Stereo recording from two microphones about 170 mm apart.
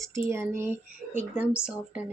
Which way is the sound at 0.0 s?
15° right (ahead or behind).